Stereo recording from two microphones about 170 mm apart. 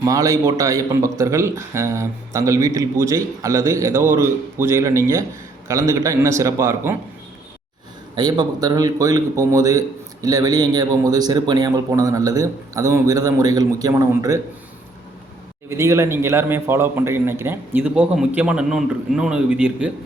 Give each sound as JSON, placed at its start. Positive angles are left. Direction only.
{"t": 0.0, "sound": "a man's voice", "side_deg": -20}
{"t": 8.1, "sound": "a man's voice", "side_deg": -25}
{"t": 15.8, "sound": "a man's voice", "side_deg": -15}